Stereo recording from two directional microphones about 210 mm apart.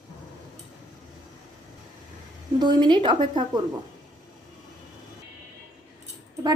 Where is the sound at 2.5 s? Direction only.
20° right (ahead or behind).